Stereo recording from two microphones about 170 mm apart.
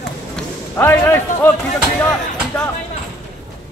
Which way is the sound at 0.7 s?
15° left (ahead or behind).